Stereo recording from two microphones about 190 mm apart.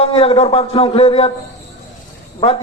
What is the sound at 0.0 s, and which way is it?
A man's voice, 30° left (ahead or behind).